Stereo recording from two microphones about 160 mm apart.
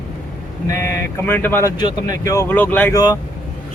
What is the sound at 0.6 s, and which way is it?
Speech, 20° left (ahead or behind).